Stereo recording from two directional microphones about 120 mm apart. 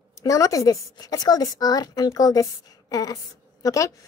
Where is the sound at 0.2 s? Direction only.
30° left (ahead or behind).